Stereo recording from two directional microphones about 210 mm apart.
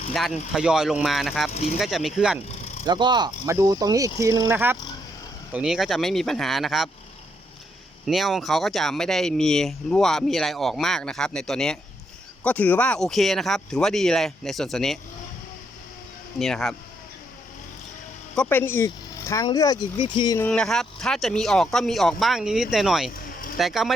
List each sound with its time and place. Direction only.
0.1 s speech: centre (ahead or behind)
1.5 s speech: 30° left (ahead or behind)
1.8 s speech: centre (ahead or behind)
2.8 s speech: 20° right (ahead or behind); by 6.9 s centre (ahead or behind)
8.0 s speech: centre (ahead or behind)
16.4 s speech: centre (ahead or behind)
18.3 s speech: 10° left (ahead or behind)
20.5 s speech: 5° left (ahead or behind)